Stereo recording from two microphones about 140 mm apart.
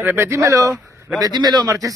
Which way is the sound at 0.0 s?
15° right (ahead or behind).